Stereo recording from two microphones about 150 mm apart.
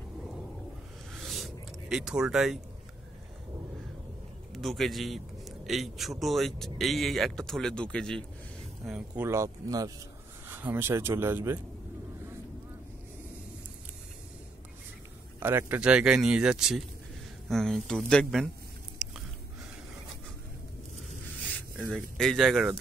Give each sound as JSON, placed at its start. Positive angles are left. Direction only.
{"t": 1.2, "sound": "a sound", "side_deg": 0}
{"t": 4.5, "sound": "a man's voice", "side_deg": 0}
{"t": 8.8, "sound": "speech", "side_deg": -10}
{"t": 15.4, "sound": "a man's voice", "side_deg": -15}
{"t": 21.7, "sound": "a man's voice", "side_deg": -5}